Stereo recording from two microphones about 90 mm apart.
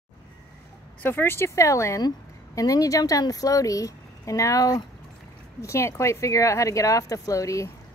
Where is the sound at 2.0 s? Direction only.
45° left (ahead or behind).